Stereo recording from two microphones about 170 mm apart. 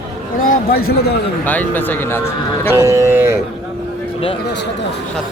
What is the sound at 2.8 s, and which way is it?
Speech, 15° right (ahead or behind).